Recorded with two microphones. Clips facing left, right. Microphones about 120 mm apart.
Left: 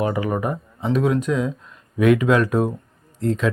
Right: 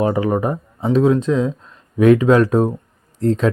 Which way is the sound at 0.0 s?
30° right (ahead or behind).